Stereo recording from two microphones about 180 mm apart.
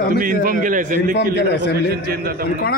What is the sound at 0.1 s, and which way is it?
Speech, 50° right (ahead or behind).